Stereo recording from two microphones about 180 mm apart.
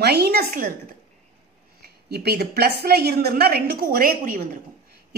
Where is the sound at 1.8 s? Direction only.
60° right (ahead or behind).